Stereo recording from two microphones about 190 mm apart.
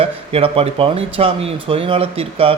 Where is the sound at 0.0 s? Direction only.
30° right (ahead or behind).